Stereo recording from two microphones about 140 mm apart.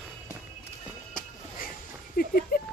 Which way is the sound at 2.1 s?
90° left.